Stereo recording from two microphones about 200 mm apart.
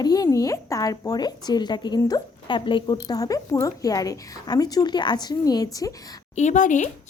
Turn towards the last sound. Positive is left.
turn(degrees=40)  # may be behind; listen again after turning